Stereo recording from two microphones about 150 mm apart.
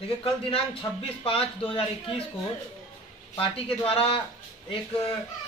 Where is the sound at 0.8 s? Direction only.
30° left (ahead or behind).